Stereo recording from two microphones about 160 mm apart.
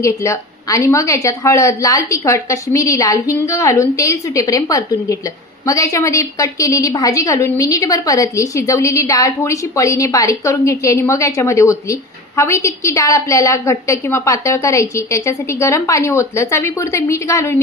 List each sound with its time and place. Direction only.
0.0 s a woman's voice: 20° left (ahead or behind)